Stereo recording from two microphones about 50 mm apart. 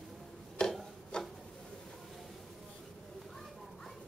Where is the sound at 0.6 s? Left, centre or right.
Centre.